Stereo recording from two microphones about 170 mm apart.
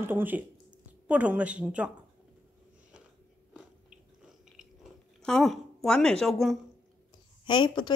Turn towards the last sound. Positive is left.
turn(degrees=25)  # may be behind; listen again after turning